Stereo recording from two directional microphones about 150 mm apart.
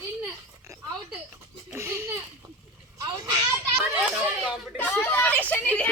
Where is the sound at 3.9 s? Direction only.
5° right (ahead or behind).